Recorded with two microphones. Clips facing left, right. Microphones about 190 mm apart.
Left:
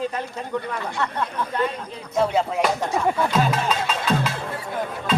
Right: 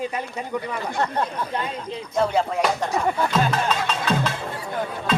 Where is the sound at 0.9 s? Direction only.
45° right (ahead or behind).